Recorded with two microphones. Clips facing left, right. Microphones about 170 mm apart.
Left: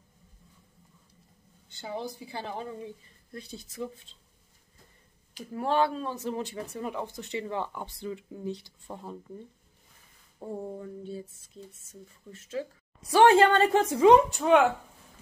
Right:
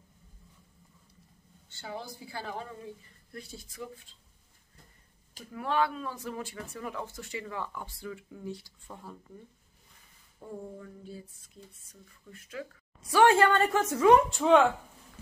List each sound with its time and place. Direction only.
1.7 s speech: 20° left (ahead or behind)
5.5 s speech: 30° left (ahead or behind)
10.4 s speech: 30° left (ahead or behind)
14.3 s speech: centre (ahead or behind)